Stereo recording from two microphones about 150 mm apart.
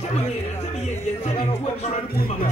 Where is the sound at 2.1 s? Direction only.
80° left.